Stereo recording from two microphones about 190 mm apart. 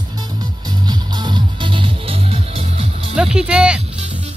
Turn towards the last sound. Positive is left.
turn(degrees=-5)  # may be behind; listen again after turning